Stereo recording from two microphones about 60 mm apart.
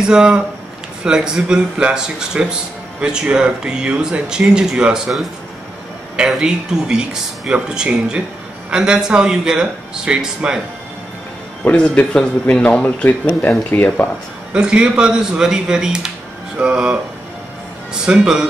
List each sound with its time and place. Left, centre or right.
0.0 s speech: centre
11.7 s a man's voice: left
13.7 s speech: left
14.5 s speech: centre
18.0 s speech: centre